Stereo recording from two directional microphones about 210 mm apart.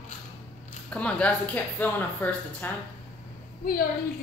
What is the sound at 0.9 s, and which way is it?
Speech, 5° left (ahead or behind).